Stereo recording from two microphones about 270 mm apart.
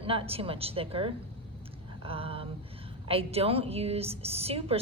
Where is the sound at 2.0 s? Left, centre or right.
Right.